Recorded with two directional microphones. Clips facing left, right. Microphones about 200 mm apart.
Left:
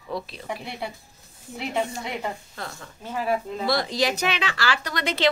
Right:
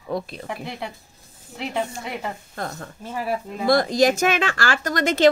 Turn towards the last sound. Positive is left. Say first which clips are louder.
# right 7 dB
turn(degrees=-45)  # may be behind; listen again after turning